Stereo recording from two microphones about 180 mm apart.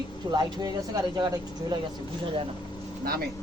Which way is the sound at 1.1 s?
20° right (ahead or behind).